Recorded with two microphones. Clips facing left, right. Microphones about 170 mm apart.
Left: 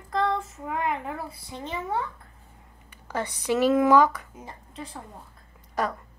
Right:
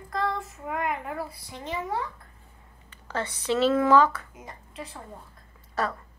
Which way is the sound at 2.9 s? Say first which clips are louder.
Left 1 dB; 15° left (ahead or behind).